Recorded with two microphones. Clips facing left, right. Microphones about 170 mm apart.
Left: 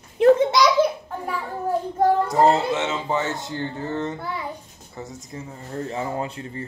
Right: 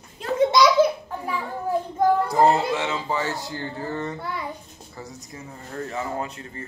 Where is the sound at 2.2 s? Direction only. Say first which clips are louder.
Left 1 dB; 20° left (ahead or behind).